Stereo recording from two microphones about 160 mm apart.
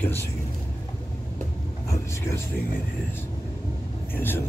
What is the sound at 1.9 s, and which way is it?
Speech, 20° left (ahead or behind).